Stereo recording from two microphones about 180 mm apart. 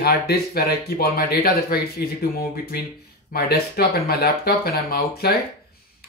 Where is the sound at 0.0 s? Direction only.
60° left (ahead or behind).